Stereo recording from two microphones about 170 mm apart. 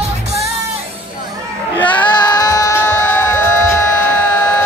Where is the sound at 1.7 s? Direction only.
10° left (ahead or behind).